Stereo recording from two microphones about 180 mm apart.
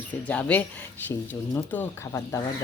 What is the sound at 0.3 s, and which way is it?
A woman's voice, 10° left (ahead or behind).